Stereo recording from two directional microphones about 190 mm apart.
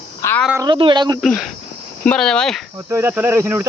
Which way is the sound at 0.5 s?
20° right (ahead or behind).